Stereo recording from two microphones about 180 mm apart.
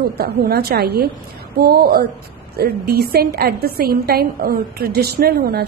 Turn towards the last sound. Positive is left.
turn(degrees=-60)  # may be behind; listen again after turning